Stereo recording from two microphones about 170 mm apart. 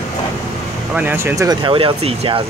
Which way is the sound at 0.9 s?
15° right (ahead or behind).